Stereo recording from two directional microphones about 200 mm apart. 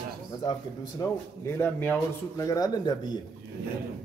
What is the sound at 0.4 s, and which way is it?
A man's voice, 15° left (ahead or behind).